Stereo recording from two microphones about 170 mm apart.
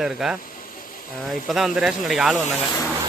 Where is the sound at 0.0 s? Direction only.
Centre (ahead or behind).